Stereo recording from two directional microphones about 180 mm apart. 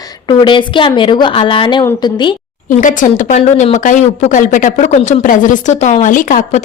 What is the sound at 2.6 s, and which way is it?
A woman's voice, 45° left (ahead or behind).